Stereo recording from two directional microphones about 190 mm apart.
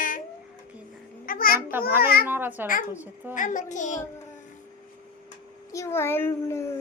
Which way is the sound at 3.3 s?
40° left (ahead or behind).